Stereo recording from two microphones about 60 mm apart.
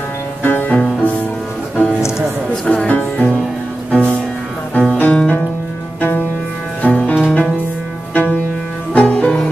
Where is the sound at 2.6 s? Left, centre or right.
Left.